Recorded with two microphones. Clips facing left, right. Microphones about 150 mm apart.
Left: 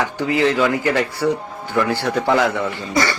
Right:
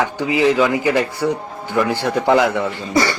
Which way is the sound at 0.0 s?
15° right (ahead or behind).